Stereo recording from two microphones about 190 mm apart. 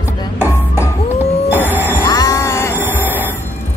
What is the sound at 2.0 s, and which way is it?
Music, 20° left (ahead or behind).